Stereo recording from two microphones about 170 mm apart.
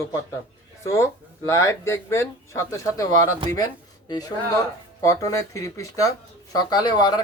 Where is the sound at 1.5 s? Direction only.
15° left (ahead or behind).